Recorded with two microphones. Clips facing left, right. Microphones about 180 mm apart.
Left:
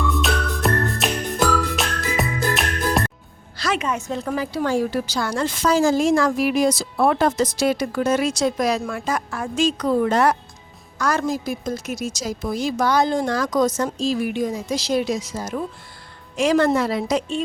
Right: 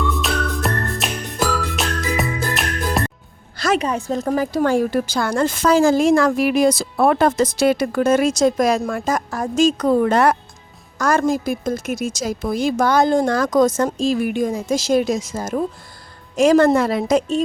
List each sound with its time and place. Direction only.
0.1 s music: centre (ahead or behind)
3.6 s a woman's voice: 40° right (ahead or behind); by 10.3 s 60° right (ahead or behind)
10.9 s a woman's voice: 45° right (ahead or behind)